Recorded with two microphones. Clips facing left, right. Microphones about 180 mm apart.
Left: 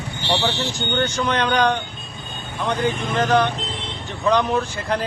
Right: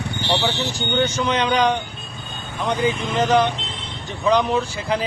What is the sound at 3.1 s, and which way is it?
Speech, 15° right (ahead or behind).